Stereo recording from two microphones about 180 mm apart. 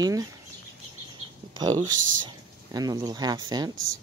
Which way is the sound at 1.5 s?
25° right (ahead or behind).